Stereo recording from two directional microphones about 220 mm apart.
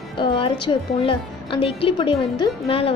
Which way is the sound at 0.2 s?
20° left (ahead or behind).